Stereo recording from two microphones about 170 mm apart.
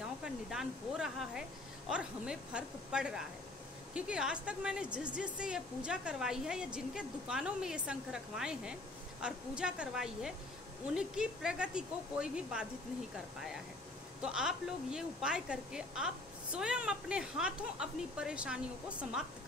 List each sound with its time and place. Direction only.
0.2 s speech: 5° right (ahead or behind)
14.2 s speech: 5° right (ahead or behind)